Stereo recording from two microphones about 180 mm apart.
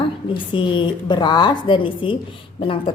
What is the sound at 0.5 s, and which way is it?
A woman's voice, 25° left (ahead or behind).